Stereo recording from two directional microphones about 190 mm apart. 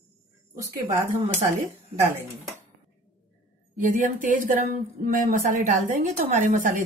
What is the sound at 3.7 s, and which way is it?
A woman's voice, 45° right (ahead or behind).